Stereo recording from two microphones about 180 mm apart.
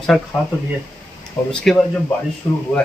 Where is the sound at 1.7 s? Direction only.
Centre (ahead or behind).